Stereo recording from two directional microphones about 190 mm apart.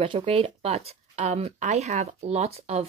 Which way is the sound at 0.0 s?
30° right (ahead or behind).